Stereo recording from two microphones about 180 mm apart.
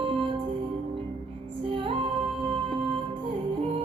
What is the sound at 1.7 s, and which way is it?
Music, 30° right (ahead or behind).